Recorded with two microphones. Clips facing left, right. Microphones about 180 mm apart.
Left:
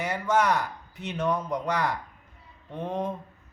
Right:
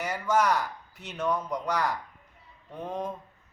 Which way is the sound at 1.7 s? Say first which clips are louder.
Left 1 dB; 5° right (ahead or behind).